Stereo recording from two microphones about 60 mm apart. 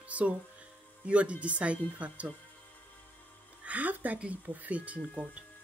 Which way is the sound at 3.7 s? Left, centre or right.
Right.